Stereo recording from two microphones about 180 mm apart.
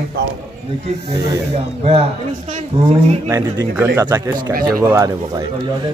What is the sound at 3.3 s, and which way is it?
Speech, 15° right (ahead or behind).